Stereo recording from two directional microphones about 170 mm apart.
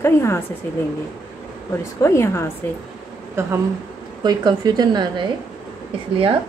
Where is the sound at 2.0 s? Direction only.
15° left (ahead or behind).